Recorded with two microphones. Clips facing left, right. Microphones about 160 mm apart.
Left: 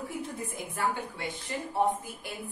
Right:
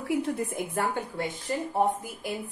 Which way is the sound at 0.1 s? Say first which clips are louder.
Right 9 dB; 65° right (ahead or behind).